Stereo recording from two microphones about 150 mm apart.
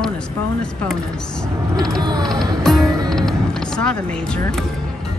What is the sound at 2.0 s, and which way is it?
Speech, 25° right (ahead or behind).